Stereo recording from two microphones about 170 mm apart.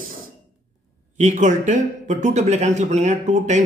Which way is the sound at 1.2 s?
50° right (ahead or behind).